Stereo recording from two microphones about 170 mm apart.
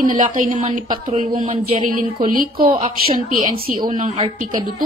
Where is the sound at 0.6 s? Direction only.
40° right (ahead or behind).